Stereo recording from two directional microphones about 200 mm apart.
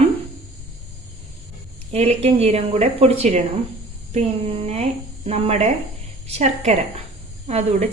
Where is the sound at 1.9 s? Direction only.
35° right (ahead or behind).